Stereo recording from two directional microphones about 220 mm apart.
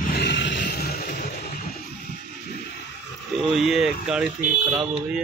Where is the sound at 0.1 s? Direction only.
50° left (ahead or behind).